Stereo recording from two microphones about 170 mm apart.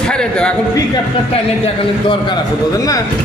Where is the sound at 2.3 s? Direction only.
20° left (ahead or behind).